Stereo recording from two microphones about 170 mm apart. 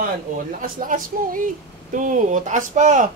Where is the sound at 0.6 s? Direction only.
55° right (ahead or behind).